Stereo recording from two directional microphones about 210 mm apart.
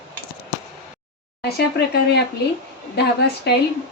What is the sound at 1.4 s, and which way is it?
A woman's voice, 50° left (ahead or behind).